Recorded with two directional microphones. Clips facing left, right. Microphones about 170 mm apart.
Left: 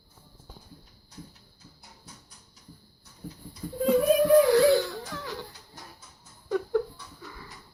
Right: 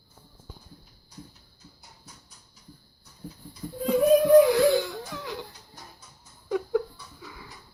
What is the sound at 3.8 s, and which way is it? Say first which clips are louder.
Baby cry: right 2 dB; 15° right (ahead or behind).